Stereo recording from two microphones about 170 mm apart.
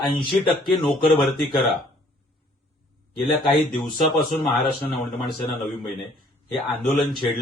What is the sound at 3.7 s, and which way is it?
A man's voice, centre (ahead or behind).